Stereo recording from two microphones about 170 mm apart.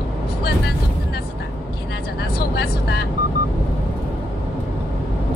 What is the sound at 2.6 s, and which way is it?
Vehicle, 70° left (ahead or behind).